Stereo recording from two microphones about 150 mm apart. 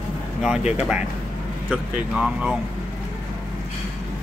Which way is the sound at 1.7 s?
5° right (ahead or behind).